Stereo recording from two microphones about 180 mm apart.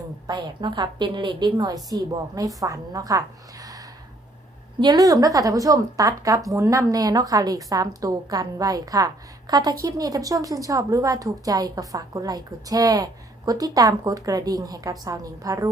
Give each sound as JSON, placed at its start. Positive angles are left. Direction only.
{"t": 0.3, "sound": "a woman's voice", "side_deg": -25}